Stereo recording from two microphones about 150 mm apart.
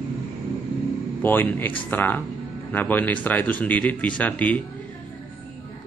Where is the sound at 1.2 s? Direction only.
10° left (ahead or behind).